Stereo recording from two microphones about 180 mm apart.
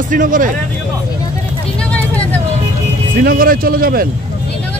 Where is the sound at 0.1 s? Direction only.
50° right (ahead or behind).